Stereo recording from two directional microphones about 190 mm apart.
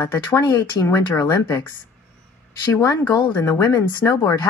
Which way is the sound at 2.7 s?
15° left (ahead or behind).